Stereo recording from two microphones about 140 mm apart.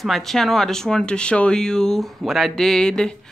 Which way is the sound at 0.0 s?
Centre (ahead or behind).